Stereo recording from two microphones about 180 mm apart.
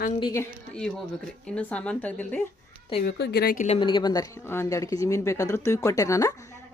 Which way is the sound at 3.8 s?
25° left (ahead or behind).